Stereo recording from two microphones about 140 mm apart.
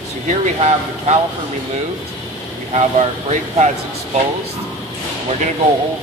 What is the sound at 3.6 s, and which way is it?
Speech, 60° right (ahead or behind).